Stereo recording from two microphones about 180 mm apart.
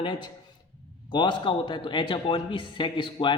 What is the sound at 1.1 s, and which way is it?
A man's voice, 25° left (ahead or behind).